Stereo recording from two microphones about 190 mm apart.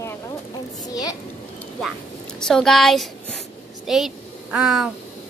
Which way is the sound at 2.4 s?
5° left (ahead or behind).